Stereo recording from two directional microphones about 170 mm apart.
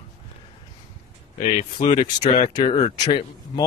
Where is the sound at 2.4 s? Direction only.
25° left (ahead or behind).